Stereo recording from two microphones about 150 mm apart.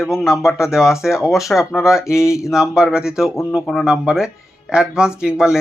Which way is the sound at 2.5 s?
5° right (ahead or behind).